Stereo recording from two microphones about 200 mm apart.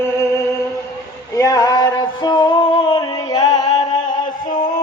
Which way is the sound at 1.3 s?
15° left (ahead or behind).